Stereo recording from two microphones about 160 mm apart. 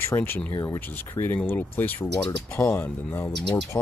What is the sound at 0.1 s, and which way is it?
Speech, 15° left (ahead or behind).